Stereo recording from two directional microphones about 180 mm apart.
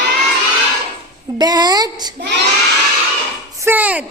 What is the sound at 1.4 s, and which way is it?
Speech, 20° right (ahead or behind).